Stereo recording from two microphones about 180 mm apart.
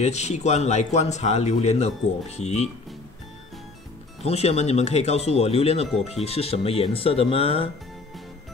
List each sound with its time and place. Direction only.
0.0 s a man's voice: 40° left (ahead or behind)
4.2 s a man's voice: 35° left (ahead or behind)